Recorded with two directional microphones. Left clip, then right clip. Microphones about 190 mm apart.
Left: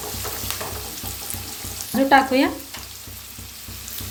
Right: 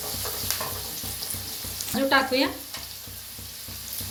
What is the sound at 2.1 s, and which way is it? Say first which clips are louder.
Frying: left 6 dB; 45° left (ahead or behind).